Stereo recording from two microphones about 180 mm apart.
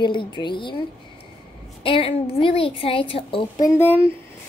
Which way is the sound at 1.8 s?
30° left (ahead or behind).